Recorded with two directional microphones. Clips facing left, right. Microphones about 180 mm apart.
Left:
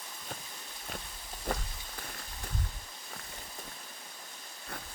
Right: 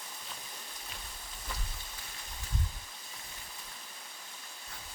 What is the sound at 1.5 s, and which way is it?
Rain on surface, 55° left (ahead or behind).